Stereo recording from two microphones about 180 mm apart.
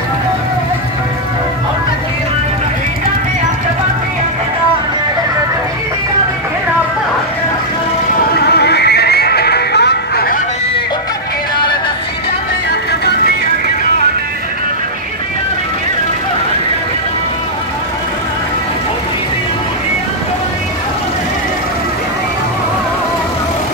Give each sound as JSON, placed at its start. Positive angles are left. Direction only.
{"t": 8.4, "sound": "neigh", "side_deg": 65}